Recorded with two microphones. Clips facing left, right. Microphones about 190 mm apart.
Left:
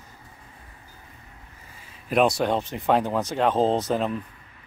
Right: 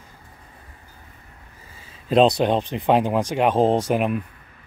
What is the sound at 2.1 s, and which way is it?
Speech, 20° right (ahead or behind).